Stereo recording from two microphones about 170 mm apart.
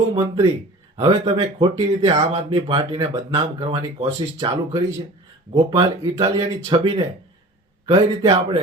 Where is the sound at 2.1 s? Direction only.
40° right (ahead or behind); by 4.8 s 25° right (ahead or behind).